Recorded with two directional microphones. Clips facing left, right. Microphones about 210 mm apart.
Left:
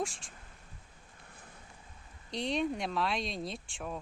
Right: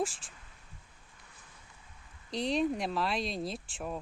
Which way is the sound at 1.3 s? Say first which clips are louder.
Left 7 dB; 55° left (ahead or behind).